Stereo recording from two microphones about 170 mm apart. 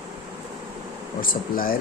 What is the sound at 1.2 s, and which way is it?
Speech, 55° left (ahead or behind).